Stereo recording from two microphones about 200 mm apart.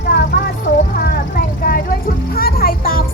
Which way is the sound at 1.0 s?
45° left (ahead or behind).